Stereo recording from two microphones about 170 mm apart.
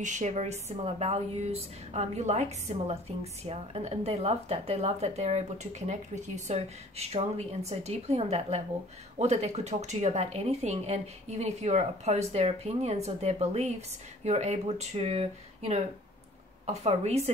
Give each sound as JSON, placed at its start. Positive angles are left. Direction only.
{"t": 0.0, "sound": "speech", "side_deg": -45}